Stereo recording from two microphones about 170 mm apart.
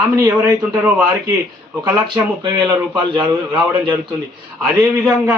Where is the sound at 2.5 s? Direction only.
10° right (ahead or behind).